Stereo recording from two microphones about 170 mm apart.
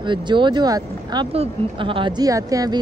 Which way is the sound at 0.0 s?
30° right (ahead or behind).